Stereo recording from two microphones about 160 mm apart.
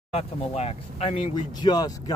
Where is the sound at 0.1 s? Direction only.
40° left (ahead or behind).